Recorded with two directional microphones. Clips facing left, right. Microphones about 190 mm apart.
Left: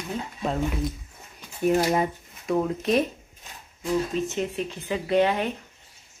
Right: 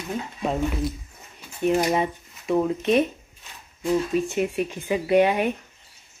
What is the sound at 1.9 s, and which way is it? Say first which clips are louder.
Speech: right 1 dB; centre (ahead or behind).